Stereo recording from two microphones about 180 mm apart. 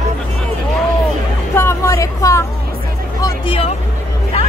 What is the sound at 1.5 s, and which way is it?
Vehicle, 15° left (ahead or behind).